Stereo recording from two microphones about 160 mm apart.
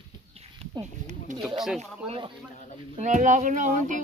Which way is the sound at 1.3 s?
50° right (ahead or behind).